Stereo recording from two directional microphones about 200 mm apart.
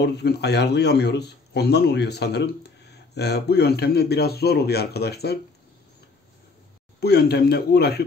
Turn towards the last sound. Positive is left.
turn(degrees=55)  # may be behind; listen again after turning